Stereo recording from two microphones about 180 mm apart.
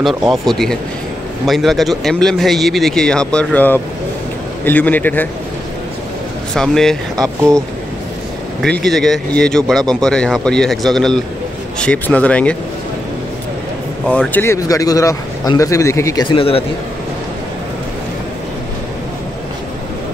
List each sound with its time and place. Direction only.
0.0 s a man's voice: centre (ahead or behind)
6.5 s a man's voice: 5° left (ahead or behind)
8.8 s a man's voice: centre (ahead or behind)
14.0 s a man's voice: 5° left (ahead or behind); by 16.6 s 30° left (ahead or behind)